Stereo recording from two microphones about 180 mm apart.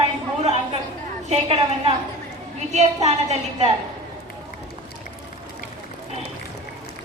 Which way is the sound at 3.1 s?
40° right (ahead or behind).